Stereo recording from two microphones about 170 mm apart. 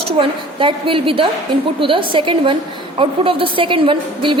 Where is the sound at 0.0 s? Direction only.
30° right (ahead or behind).